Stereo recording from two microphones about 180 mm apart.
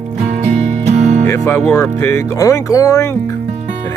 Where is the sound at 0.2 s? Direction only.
40° right (ahead or behind).